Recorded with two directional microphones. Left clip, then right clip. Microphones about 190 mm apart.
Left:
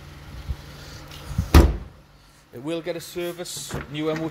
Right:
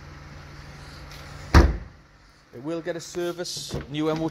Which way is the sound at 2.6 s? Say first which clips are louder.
Left 2 dB; 5° right (ahead or behind).